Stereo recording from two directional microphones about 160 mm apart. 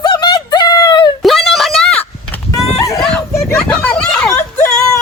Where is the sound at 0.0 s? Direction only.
25° left (ahead or behind).